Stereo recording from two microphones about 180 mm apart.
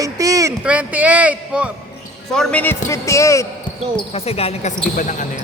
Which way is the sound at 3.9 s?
35° left (ahead or behind).